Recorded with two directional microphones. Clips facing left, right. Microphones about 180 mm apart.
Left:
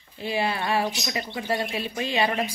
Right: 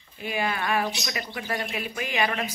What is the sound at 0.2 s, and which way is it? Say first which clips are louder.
Speech: left 2 dB; 30° left (ahead or behind).